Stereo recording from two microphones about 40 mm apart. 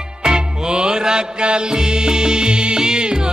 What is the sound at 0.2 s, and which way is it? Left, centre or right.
Music, right.